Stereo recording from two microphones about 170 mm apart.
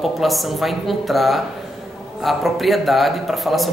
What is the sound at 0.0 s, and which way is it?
A man's voice, centre (ahead or behind).